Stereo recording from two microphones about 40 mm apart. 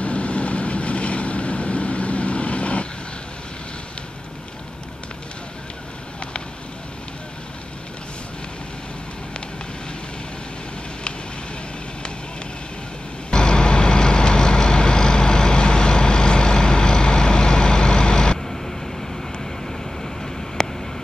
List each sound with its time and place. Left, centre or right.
0.0 s vehicle: left
13.3 s vehicle: centre
20.6 s a sound: centre